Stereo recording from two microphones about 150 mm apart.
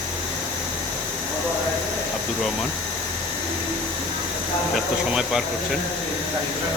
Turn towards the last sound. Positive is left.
turn(degrees=-5)  # may be behind; listen again after turning